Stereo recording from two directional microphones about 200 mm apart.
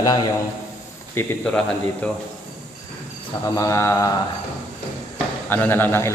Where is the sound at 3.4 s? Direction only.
15° left (ahead or behind).